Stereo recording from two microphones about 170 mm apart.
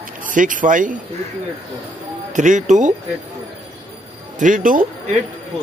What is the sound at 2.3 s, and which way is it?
Speech, 45° right (ahead or behind).